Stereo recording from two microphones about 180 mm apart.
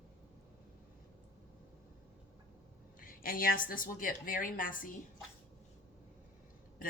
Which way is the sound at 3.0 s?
50° left (ahead or behind).